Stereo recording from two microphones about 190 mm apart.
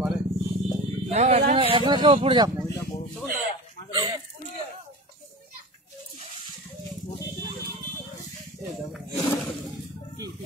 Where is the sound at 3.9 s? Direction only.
20° right (ahead or behind).